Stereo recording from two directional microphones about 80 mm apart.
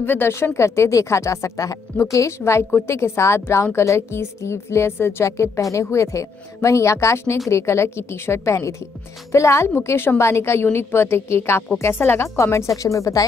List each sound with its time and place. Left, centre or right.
0.0 s speech: left